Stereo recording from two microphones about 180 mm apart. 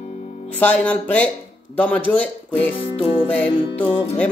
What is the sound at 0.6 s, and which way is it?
Music, 10° left (ahead or behind).